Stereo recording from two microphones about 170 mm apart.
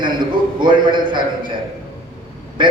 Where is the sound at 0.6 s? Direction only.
25° right (ahead or behind).